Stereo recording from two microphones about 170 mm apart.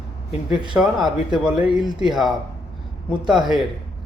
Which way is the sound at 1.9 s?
25° right (ahead or behind).